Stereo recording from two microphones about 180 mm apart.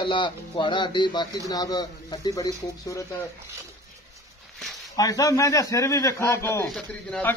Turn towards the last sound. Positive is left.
turn(degrees=10)  # may be behind; listen again after turning